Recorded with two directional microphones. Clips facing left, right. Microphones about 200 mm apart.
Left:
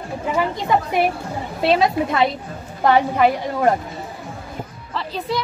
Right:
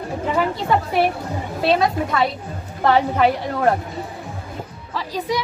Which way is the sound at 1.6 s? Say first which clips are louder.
Left 1 dB; 25° left (ahead or behind).